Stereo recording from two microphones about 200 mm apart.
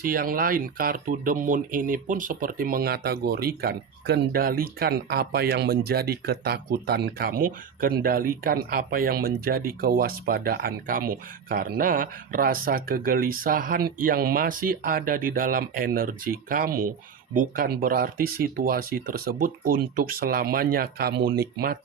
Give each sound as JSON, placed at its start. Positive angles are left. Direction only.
{"t": 0.0, "sound": "speech", "side_deg": -45}